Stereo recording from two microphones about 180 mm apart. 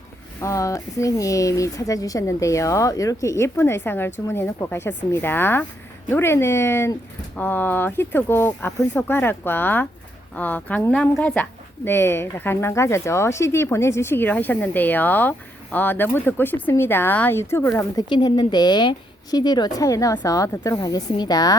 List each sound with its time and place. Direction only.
0.3 s a woman's voice: 15° left (ahead or behind)